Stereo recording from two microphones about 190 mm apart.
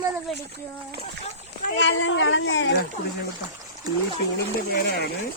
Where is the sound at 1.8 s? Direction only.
85° left.